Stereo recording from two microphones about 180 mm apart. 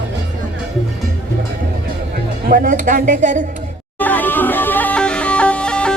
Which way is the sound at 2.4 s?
50° right (ahead or behind).